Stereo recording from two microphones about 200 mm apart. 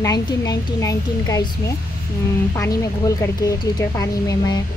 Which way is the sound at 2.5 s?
15° left (ahead or behind).